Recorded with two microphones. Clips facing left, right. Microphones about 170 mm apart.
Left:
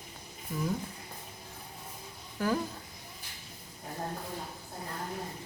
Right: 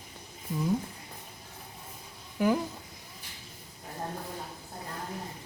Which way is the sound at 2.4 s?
15° right (ahead or behind).